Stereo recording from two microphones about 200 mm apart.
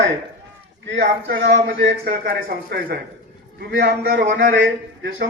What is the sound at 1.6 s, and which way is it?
A man's voice, 45° right (ahead or behind).